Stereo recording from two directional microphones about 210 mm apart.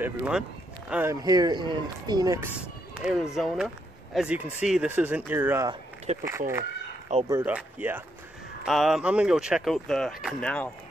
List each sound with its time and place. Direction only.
0.0 s speech: 5° right (ahead or behind)
1.1 s speech: 20° right (ahead or behind); by 10.7 s 5° left (ahead or behind)